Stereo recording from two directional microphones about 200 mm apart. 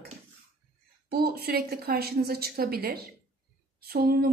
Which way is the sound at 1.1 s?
50° right (ahead or behind).